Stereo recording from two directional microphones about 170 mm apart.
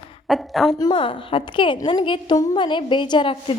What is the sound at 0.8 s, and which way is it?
A woman's voice, 25° left (ahead or behind).